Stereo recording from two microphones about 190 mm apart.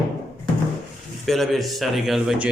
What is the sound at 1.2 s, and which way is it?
Speech, centre (ahead or behind).